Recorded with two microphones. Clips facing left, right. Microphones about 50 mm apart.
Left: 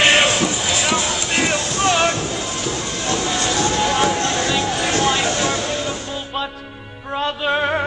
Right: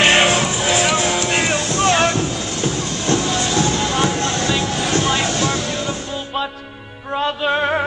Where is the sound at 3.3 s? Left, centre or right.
Left.